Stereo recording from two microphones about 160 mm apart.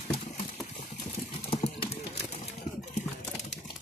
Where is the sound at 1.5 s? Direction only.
40° left (ahead or behind).